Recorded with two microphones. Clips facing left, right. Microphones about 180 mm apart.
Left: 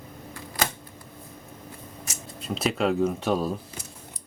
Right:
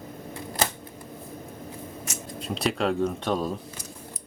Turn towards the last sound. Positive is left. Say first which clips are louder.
# left 2 dB
turn(degrees=5)  # may be behind; listen again after turning